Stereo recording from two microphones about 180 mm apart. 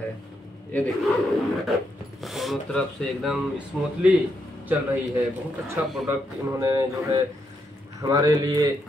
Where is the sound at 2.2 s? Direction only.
Centre (ahead or behind).